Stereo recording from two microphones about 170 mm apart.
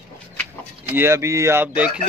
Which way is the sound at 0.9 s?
15° right (ahead or behind).